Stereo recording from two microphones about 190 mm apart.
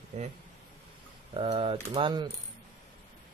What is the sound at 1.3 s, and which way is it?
Speech, 25° right (ahead or behind).